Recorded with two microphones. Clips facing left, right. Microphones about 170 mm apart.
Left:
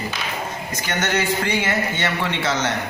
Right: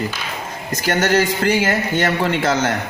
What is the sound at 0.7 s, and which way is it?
A man's voice, 40° right (ahead or behind).